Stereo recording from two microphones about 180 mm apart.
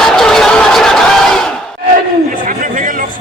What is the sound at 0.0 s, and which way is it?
Crowd, centre (ahead or behind).